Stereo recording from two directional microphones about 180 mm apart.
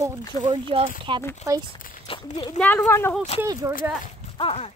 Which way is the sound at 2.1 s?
30° left (ahead or behind).